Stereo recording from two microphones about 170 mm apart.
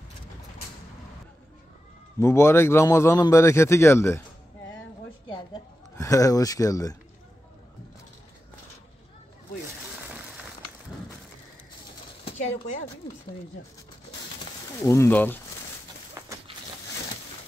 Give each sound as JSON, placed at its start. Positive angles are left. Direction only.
{"t": 2.1, "sound": "a man's voice", "side_deg": 15}
{"t": 5.9, "sound": "speech", "side_deg": 20}
{"t": 12.3, "sound": "speech", "side_deg": 40}
{"t": 14.8, "sound": "a man's voice", "side_deg": 15}
{"t": 16.2, "sound": "a sound", "side_deg": -20}